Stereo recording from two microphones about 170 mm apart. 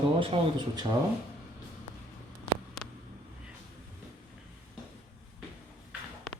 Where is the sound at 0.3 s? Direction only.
35° right (ahead or behind).